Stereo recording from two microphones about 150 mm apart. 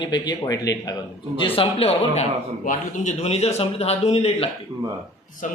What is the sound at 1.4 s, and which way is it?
A man's voice, 35° left (ahead or behind).